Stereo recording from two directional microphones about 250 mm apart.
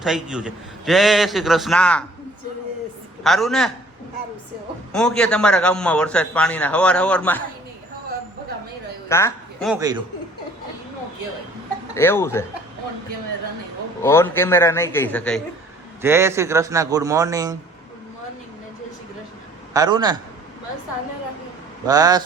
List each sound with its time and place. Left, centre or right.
0.0 s a man's voice: centre
3.2 s a man's voice: centre
4.9 s a man's voice: centre
9.0 s a sound: centre
9.6 s a man's voice: centre
11.9 s a man's voice: centre
14.0 s a man's voice: centre
16.0 s a man's voice: centre
19.7 s a man's voice: centre
21.8 s a man's voice: centre